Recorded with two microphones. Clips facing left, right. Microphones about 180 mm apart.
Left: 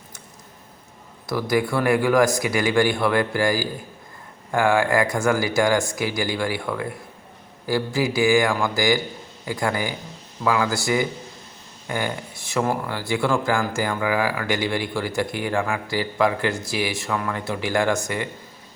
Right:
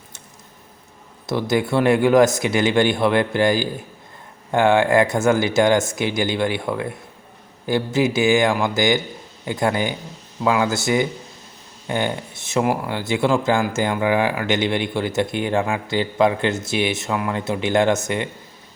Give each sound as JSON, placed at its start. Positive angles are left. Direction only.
{"t": 1.3, "sound": "speech", "side_deg": -25}